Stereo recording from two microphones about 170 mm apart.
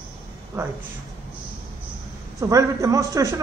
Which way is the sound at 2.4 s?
20° right (ahead or behind).